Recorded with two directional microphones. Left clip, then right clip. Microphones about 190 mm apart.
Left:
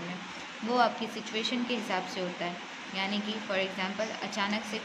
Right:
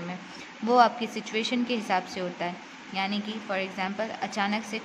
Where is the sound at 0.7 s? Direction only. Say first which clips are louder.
Right 6 dB; 45° right (ahead or behind).